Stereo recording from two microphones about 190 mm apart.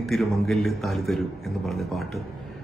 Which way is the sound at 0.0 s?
Centre (ahead or behind).